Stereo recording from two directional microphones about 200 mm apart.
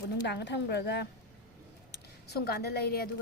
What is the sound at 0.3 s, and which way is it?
A woman's voice, 55° left (ahead or behind).